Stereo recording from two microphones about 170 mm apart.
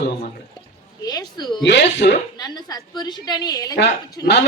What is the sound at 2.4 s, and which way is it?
A woman's voice, 25° left (ahead or behind).